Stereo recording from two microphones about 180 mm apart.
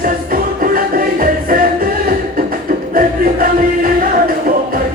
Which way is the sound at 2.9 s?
50° right (ahead or behind).